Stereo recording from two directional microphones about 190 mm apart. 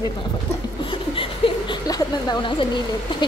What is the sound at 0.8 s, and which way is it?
Speech, 25° left (ahead or behind).